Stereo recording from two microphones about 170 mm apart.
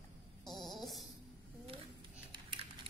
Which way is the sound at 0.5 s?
Centre (ahead or behind).